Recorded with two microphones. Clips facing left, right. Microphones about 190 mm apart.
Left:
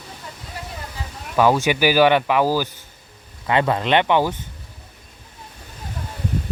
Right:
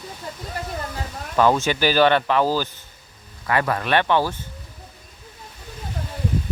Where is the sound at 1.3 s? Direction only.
10° left (ahead or behind).